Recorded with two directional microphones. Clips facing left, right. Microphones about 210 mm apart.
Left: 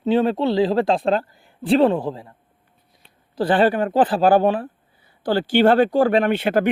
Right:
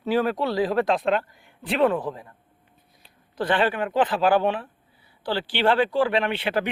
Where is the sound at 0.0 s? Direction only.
25° left (ahead or behind).